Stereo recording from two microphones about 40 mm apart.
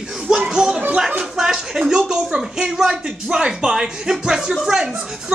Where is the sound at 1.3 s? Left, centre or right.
Centre.